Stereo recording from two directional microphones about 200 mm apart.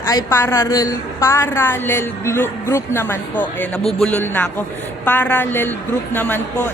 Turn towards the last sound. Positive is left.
turn(degrees=10)  # may be behind; listen again after turning